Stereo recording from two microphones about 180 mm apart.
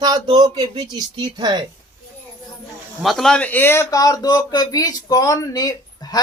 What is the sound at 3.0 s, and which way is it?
Speech, centre (ahead or behind).